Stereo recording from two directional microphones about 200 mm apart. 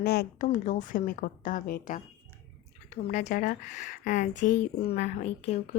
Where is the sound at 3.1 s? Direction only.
40° left (ahead or behind).